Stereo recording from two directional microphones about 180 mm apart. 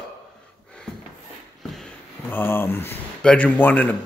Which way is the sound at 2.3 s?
10° left (ahead or behind).